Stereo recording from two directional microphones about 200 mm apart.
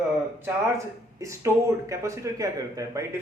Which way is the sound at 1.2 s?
15° right (ahead or behind).